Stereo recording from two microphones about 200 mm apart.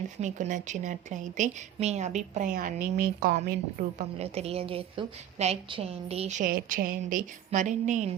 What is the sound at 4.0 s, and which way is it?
A woman's voice, 30° right (ahead or behind).